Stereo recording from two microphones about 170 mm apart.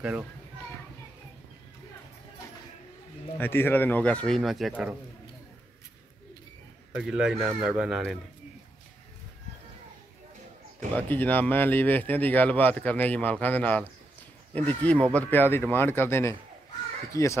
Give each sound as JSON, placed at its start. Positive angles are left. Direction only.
{"t": 3.3, "sound": "speech", "side_deg": 10}
{"t": 7.0, "sound": "speech", "side_deg": -5}
{"t": 11.0, "sound": "speech", "side_deg": 10}